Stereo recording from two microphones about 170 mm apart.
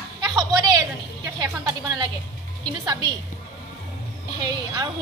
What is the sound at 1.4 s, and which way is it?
Music, 25° right (ahead or behind).